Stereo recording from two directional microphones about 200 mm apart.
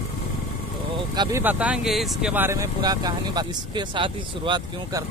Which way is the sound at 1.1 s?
20° right (ahead or behind).